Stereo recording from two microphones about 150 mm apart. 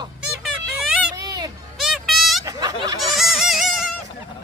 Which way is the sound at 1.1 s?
25° right (ahead or behind).